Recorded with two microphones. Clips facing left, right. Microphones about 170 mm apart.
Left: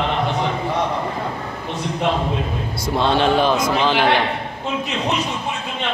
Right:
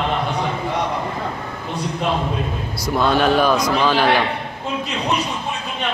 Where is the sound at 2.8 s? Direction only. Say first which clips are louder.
Right 1 dB; 25° left (ahead or behind).